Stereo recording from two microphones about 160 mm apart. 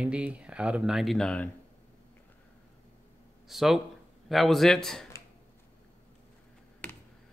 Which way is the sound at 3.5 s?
Centre (ahead or behind).